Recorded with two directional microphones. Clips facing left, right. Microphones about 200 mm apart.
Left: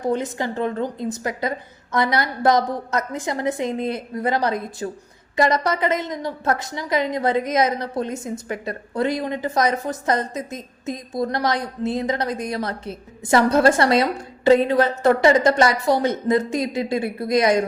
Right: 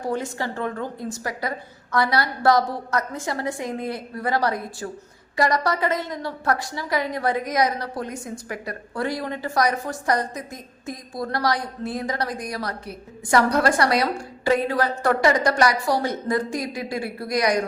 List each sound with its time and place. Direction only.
0.0 s a woman's voice: 20° left (ahead or behind)